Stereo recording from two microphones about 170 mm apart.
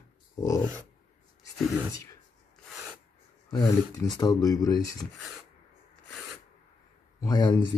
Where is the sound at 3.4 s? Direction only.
20° left (ahead or behind).